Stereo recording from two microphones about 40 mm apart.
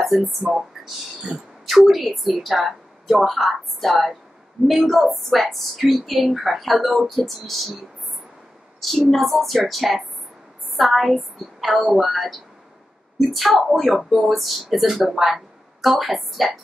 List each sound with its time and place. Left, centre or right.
0.4 s speech: centre
1.7 s a woman's voice: centre
9.1 s a woman's voice: centre